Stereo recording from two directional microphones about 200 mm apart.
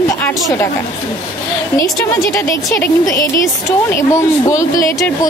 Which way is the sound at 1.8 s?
10° left (ahead or behind).